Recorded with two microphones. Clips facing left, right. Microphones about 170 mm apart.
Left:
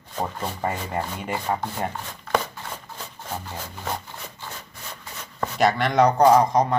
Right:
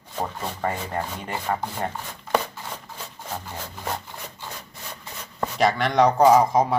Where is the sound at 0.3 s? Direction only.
Centre (ahead or behind).